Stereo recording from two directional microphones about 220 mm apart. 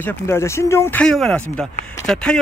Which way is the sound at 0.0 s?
10° left (ahead or behind).